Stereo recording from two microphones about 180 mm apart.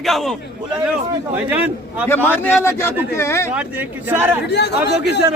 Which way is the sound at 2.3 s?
15° left (ahead or behind).